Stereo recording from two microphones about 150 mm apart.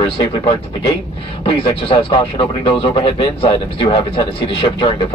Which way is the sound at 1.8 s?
35° left (ahead or behind).